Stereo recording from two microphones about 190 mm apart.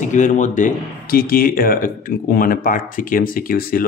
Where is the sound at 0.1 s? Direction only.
40° left (ahead or behind).